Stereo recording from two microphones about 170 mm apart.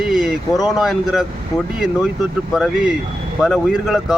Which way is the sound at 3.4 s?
5° right (ahead or behind).